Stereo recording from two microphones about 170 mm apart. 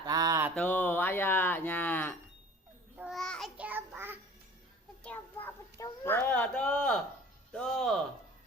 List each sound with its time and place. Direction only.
0.0 s mantra: 20° right (ahead or behind)
0.5 s speech: 10° left (ahead or behind)
3.0 s child singing: centre (ahead or behind)
3.6 s a sound: 10° right (ahead or behind)
5.0 s a sound: 10° left (ahead or behind)
7.5 s music: 5° left (ahead or behind)